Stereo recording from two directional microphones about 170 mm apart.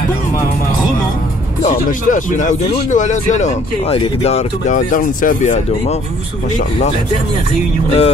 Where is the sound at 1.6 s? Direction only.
50° left (ahead or behind).